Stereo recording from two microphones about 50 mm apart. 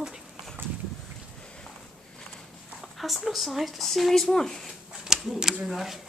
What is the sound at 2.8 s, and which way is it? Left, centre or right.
Speech, centre.